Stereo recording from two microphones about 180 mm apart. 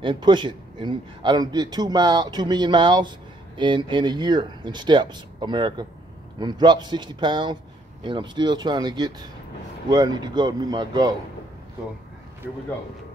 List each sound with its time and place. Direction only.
0.0 s speech: 25° right (ahead or behind)
12.4 s speech: centre (ahead or behind)